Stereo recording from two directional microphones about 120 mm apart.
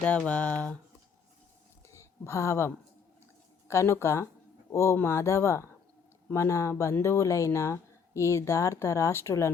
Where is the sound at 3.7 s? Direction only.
20° left (ahead or behind).